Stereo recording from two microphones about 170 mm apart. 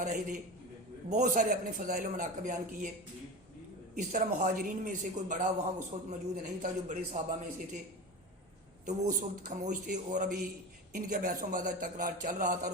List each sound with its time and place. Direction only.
0.0 s a man's voice: 50° right (ahead or behind)
3.9 s a man's voice: 50° right (ahead or behind)
8.9 s a man's voice: 50° right (ahead or behind)